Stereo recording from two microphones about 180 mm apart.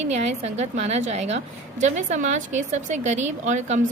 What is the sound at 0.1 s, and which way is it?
A woman's voice, 35° right (ahead or behind).